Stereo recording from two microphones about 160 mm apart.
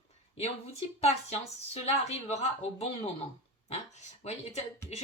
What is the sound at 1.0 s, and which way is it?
Speech, 40° left (ahead or behind).